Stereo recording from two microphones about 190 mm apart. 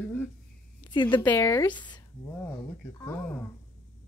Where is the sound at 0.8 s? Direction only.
25° left (ahead or behind).